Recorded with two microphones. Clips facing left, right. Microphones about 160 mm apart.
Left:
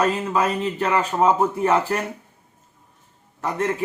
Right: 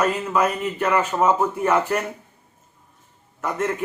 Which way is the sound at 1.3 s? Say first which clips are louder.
Left 2 dB; 15° left (ahead or behind).